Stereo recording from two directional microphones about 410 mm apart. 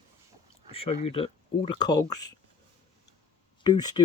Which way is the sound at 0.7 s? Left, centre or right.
Centre.